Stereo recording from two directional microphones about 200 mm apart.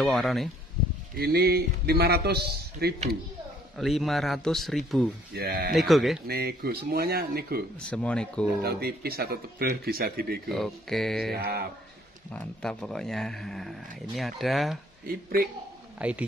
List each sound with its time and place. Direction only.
0.0 s a man's voice: centre (ahead or behind)
1.1 s speech: 50° right (ahead or behind)
3.7 s a man's voice: centre (ahead or behind)
5.3 s speech: 50° right (ahead or behind)
5.8 s a man's voice: centre (ahead or behind)
6.2 s speech: 50° right (ahead or behind)
7.8 s a man's voice: 5° left (ahead or behind)
8.6 s speech: 50° right (ahead or behind)
10.5 s a man's voice: centre (ahead or behind)
11.3 s speech: 50° right (ahead or behind)
12.3 s a man's voice: 5° left (ahead or behind)
16.0 s speech: 5° right (ahead or behind)